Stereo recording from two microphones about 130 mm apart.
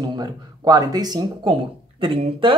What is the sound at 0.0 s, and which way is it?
Speech, 35° right (ahead or behind).